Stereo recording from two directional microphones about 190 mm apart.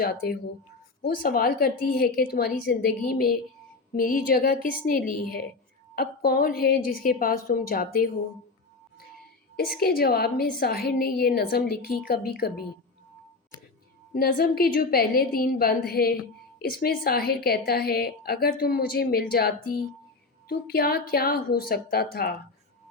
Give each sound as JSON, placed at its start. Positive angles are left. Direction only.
{"t": 0.0, "sound": "a woman's voice", "side_deg": 50}
{"t": 9.6, "sound": "a woman's voice", "side_deg": 55}
{"t": 14.1, "sound": "a woman's voice", "side_deg": 50}